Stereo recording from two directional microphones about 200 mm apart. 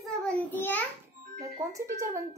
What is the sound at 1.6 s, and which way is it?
Speech, 15° right (ahead or behind).